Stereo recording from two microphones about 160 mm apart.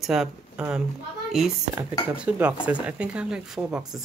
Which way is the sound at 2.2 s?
10° right (ahead or behind).